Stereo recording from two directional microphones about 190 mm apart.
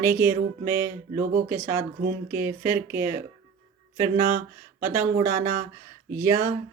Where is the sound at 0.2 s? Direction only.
10° right (ahead or behind).